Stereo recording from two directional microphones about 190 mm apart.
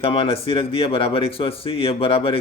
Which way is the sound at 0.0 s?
30° left (ahead or behind).